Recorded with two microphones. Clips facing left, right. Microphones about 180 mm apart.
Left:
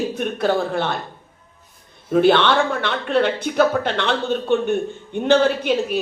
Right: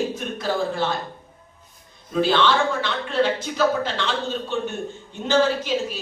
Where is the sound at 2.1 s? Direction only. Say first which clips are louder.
Left 5 dB; 60° left (ahead or behind).